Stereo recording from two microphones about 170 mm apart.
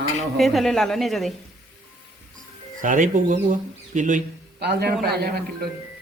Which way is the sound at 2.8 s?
50° right (ahead or behind).